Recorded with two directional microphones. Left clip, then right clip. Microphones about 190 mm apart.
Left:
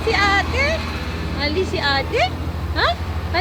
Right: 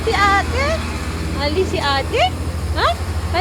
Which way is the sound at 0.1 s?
10° left (ahead or behind).